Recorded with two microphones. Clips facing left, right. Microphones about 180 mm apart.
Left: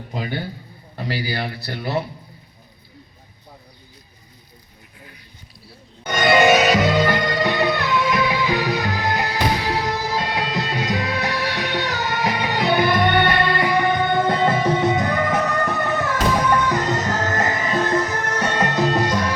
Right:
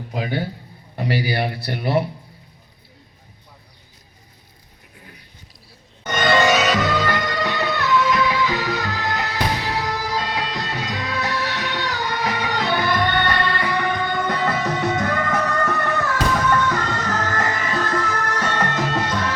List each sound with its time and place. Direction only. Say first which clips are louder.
1.2 s speech: right 3 dB; 20° right (ahead or behind)
6.0 s music: left 2 dB; 15° left (ahead or behind)